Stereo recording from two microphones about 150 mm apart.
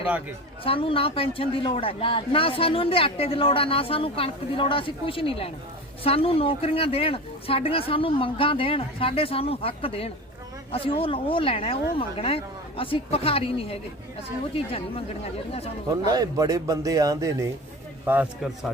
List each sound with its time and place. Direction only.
0.6 s speech: 35° left (ahead or behind)
16.0 s a man's voice: 25° right (ahead or behind)